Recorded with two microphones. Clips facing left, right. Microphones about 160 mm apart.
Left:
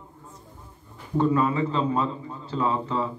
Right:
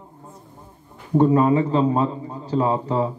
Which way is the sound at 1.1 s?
40° right (ahead or behind).